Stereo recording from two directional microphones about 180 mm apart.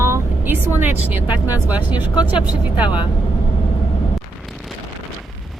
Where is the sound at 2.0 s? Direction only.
25° left (ahead or behind).